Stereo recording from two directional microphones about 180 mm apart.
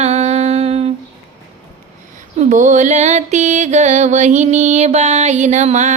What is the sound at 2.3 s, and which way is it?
Music, 40° right (ahead or behind).